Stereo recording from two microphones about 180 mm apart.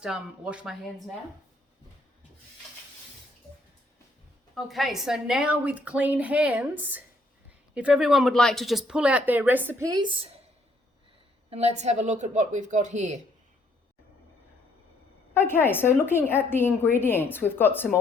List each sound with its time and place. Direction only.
0.0 s speech: 5° right (ahead or behind)
4.5 s speech: centre (ahead or behind); by 10.4 s 30° right (ahead or behind)
11.5 s a woman's voice: 35° right (ahead or behind)
15.4 s a woman's voice: 10° left (ahead or behind)